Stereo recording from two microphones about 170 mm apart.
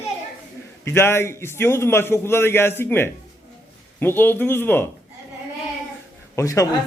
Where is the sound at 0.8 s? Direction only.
15° left (ahead or behind).